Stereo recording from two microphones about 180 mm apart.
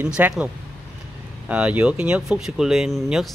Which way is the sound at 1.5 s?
10° right (ahead or behind).